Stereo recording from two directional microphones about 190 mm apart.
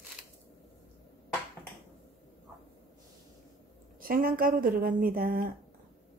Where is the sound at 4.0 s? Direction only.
50° right (ahead or behind).